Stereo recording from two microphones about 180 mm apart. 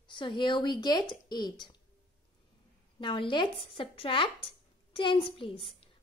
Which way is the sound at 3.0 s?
25° left (ahead or behind).